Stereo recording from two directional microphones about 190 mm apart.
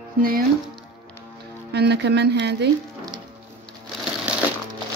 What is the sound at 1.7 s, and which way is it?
A woman's voice, 60° right (ahead or behind).